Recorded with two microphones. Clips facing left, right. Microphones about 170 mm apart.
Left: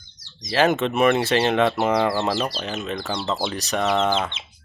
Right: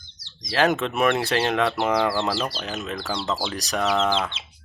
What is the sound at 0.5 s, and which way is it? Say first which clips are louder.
Speech: left 2 dB; centre (ahead or behind).